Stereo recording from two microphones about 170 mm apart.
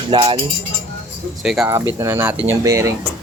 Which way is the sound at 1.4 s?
5° right (ahead or behind).